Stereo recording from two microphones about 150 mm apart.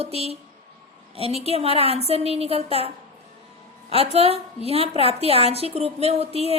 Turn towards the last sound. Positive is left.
turn(degrees=-45)  # may be behind; listen again after turning